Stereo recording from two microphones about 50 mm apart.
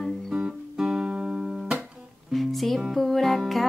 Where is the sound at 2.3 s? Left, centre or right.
Centre.